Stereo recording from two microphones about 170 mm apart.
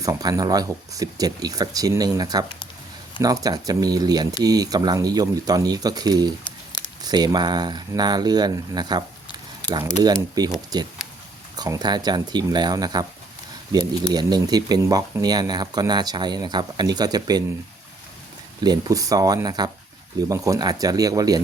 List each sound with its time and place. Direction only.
0.0 s speech: 20° right (ahead or behind)
14.1 s speech: 25° right (ahead or behind)
18.6 s speech: 20° right (ahead or behind)